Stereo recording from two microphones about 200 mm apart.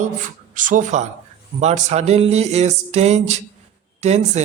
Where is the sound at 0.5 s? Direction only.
40° right (ahead or behind).